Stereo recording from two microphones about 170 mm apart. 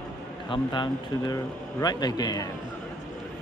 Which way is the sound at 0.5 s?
25° left (ahead or behind).